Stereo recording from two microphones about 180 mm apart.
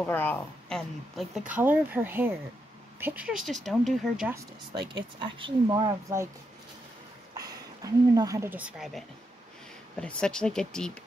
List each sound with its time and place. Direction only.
0.0 s a woman's voice: 10° left (ahead or behind)
1.5 s a woman's voice: 10° right (ahead or behind)
5.2 s speech: 25° right (ahead or behind)
7.3 s a woman's voice: 20° right (ahead or behind); by 10.9 s 5° left (ahead or behind)